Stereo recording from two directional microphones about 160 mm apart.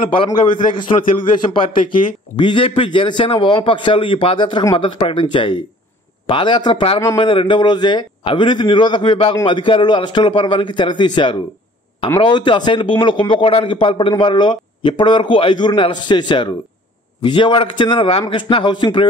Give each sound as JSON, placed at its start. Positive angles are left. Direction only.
{"t": 0.0, "sound": "a man's voice", "side_deg": 35}
{"t": 2.3, "sound": "a man's voice", "side_deg": 30}